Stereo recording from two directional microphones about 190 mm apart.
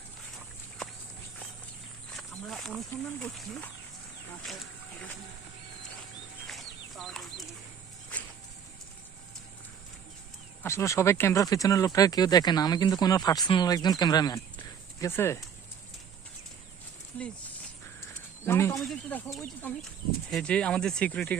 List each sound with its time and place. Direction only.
2.1 s wild animals: 5° left (ahead or behind)
2.9 s speech: 5° left (ahead or behind)
6.9 s speech: centre (ahead or behind)
10.6 s speech: 15° left (ahead or behind)
18.0 s a sound: 15° left (ahead or behind)
18.8 s speech: 5° left (ahead or behind)